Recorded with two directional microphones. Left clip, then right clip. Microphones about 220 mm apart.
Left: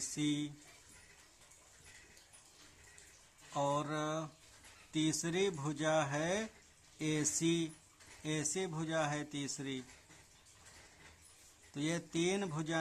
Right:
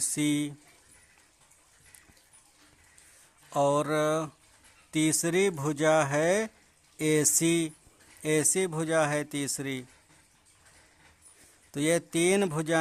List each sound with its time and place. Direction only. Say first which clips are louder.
0.1 s speech: right 8 dB; 45° right (ahead or behind)
3.5 s speech: right 10 dB; 45° right (ahead or behind)
11.7 s speech: right 12 dB; 45° right (ahead or behind)